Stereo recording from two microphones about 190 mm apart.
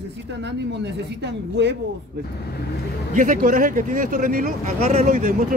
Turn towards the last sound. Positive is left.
turn(degrees=-40)  # may be behind; listen again after turning